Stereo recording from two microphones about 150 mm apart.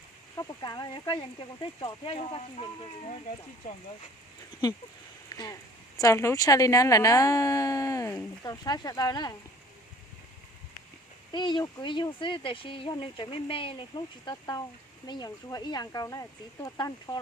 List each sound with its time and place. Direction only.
0.3 s speech: 25° left (ahead or behind); by 3.2 s 40° left (ahead or behind)
5.3 s speech: 25° left (ahead or behind)
11.3 s speech: 30° left (ahead or behind)